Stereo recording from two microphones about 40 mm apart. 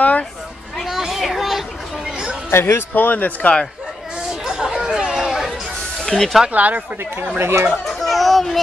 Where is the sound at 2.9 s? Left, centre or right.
Left.